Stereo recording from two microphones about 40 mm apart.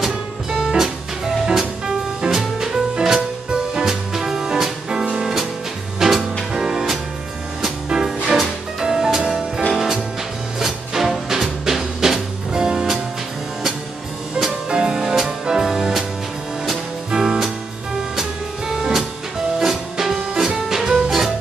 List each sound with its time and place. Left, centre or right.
0.0 s music: centre
14.7 s music: centre
17.1 s music: centre
18.7 s music: centre